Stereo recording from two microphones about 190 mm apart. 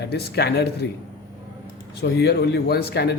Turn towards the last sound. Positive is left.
turn(degrees=60)  # may be behind; listen again after turning